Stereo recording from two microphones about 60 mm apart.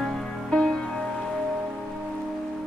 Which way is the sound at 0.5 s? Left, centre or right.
Centre.